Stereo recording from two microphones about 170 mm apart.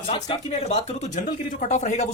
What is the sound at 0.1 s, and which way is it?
Speech, 35° left (ahead or behind).